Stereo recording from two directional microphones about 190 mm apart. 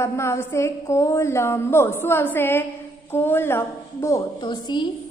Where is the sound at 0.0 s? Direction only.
15° left (ahead or behind).